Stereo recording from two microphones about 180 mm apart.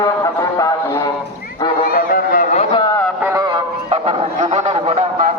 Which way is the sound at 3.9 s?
40° right (ahead or behind).